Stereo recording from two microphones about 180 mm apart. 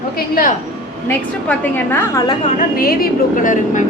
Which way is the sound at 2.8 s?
55° left (ahead or behind).